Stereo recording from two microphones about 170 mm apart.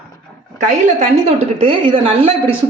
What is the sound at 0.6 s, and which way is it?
A woman's voice, 45° right (ahead or behind).